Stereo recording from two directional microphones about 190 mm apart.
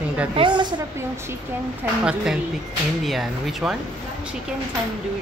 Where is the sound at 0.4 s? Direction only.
25° right (ahead or behind).